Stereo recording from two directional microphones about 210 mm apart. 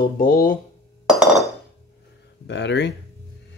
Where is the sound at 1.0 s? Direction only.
Centre (ahead or behind).